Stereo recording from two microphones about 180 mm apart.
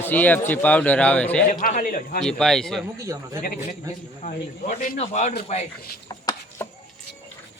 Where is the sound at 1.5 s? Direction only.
50° left (ahead or behind).